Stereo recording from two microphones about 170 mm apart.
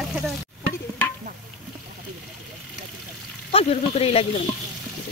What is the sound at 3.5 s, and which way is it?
Speech, 35° left (ahead or behind).